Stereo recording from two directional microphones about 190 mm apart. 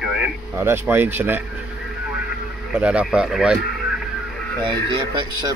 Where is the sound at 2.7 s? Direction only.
5° right (ahead or behind).